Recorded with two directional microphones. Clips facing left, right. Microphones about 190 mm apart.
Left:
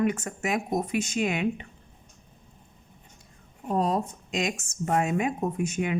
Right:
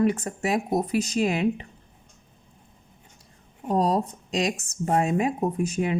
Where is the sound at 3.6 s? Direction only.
35° right (ahead or behind).